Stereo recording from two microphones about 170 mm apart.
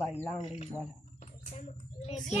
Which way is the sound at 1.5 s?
35° left (ahead or behind).